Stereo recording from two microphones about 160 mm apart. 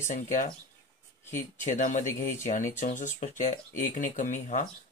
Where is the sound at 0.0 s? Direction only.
50° left (ahead or behind).